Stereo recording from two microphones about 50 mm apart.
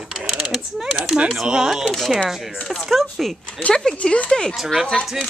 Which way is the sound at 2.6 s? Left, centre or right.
Centre.